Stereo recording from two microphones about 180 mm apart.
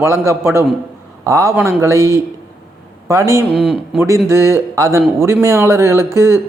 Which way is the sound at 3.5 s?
Centre (ahead or behind).